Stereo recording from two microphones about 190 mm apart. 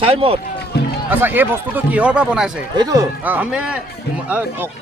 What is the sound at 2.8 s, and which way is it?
Speech, 20° right (ahead or behind).